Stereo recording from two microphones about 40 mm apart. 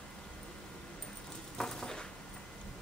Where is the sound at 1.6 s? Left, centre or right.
Centre.